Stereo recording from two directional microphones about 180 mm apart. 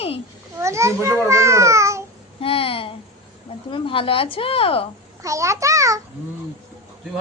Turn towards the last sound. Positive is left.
turn(degrees=-20)  # may be behind; listen again after turning